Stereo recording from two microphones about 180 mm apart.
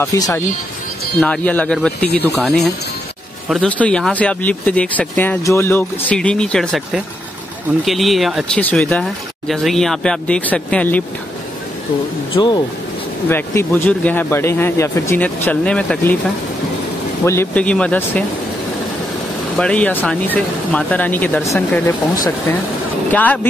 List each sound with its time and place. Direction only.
0.0 s speech: 15° left (ahead or behind)
12.4 s speech: 25° left (ahead or behind)
17.2 s speech: 10° left (ahead or behind)
19.5 s speech: 5° left (ahead or behind)
23.1 s speech: 10° left (ahead or behind)